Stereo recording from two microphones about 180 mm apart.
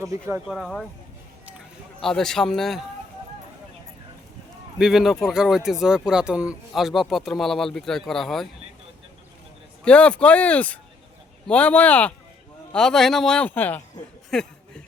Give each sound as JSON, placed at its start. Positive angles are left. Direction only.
{"t": 0.0, "sound": "speech", "side_deg": -15}
{"t": 0.4, "sound": "speech", "side_deg": 0}
{"t": 1.5, "sound": "run", "side_deg": 0}
{"t": 4.8, "sound": "speech", "side_deg": 0}
{"t": 9.8, "sound": "speech", "side_deg": 5}
{"t": 14.3, "sound": "a sound", "side_deg": 5}